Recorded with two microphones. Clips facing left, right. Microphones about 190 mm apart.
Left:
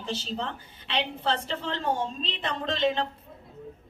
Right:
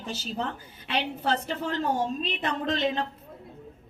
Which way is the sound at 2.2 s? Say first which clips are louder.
Right 3 dB; 30° left (ahead or behind).